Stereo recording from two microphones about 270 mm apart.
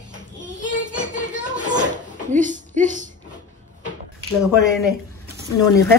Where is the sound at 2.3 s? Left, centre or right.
Right.